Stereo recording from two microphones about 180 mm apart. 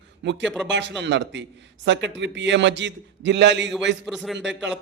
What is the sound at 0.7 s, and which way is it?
A man's voice, 80° right.